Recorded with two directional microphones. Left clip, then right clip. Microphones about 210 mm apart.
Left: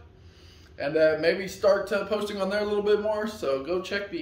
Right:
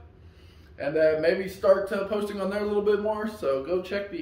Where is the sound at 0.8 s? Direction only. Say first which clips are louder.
Even; 25° left (ahead or behind).